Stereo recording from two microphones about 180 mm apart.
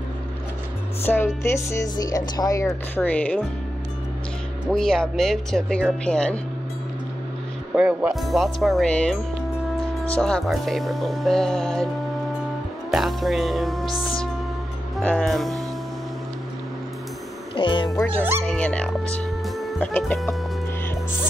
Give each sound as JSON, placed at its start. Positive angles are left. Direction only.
{"t": 1.0, "sound": "speech", "side_deg": 15}
{"t": 4.6, "sound": "speech", "side_deg": 5}
{"t": 7.7, "sound": "speech", "side_deg": -5}
{"t": 12.9, "sound": "music", "side_deg": 0}
{"t": 15.0, "sound": "speech", "side_deg": 5}
{"t": 17.6, "sound": "speech", "side_deg": 25}
{"t": 18.4, "sound": "speech", "side_deg": 5}
{"t": 19.1, "sound": "music", "side_deg": 5}